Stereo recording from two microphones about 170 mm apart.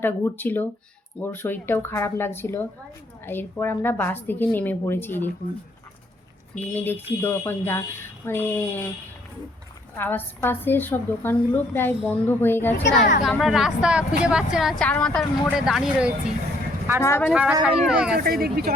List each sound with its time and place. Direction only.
0.0 s speech: 10° left (ahead or behind)
6.6 s speech: 10° left (ahead or behind)
10.0 s speech: 10° left (ahead or behind)
13.4 s speech: centre (ahead or behind)
17.0 s speech: 15° left (ahead or behind)
17.3 s speech: 5° right (ahead or behind)
18.2 s speech: 60° right (ahead or behind)